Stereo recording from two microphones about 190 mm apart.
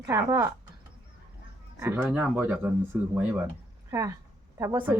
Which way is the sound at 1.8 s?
10° right (ahead or behind).